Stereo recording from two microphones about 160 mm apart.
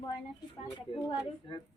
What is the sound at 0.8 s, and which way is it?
Speech, 30° left (ahead or behind).